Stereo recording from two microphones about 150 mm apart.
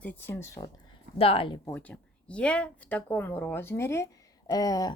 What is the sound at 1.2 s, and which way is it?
Speech, 40° left (ahead or behind).